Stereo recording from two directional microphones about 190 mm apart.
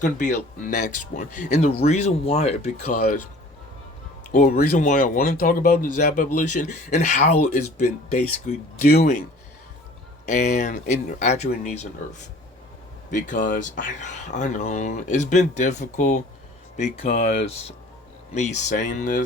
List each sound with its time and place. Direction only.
0.0 s speech: 40° left (ahead or behind)
4.3 s speech: 45° left (ahead or behind)
8.4 s speech: 35° left (ahead or behind)
10.2 s speech: 40° left (ahead or behind)